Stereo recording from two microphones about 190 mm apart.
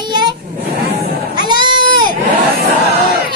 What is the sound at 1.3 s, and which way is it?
Goat, 25° right (ahead or behind).